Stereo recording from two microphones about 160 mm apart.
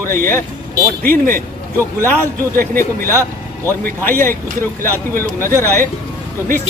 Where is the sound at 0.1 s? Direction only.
15° left (ahead or behind).